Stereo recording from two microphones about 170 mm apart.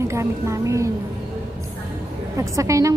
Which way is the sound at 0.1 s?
15° right (ahead or behind).